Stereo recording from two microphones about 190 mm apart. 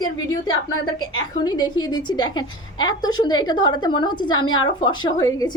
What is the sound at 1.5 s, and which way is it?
A woman's voice, 20° left (ahead or behind).